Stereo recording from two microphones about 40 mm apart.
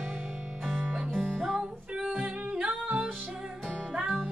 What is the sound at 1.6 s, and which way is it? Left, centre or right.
Music, right.